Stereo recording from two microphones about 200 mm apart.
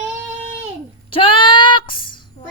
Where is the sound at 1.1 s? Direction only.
25° left (ahead or behind).